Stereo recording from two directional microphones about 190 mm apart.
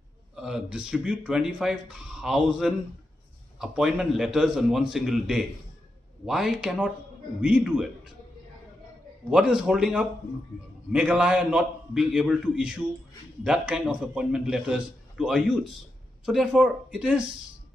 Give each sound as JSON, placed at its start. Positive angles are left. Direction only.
{"t": 0.4, "sound": "speech", "side_deg": -5}
{"t": 9.3, "sound": "speech", "side_deg": -5}